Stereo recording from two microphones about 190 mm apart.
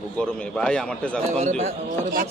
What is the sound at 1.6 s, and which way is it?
Speech, 40° right (ahead or behind).